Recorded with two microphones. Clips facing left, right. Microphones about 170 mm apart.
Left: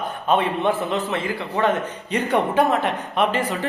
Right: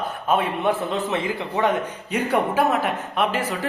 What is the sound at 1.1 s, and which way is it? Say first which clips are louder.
Speech: even; 20° right (ahead or behind).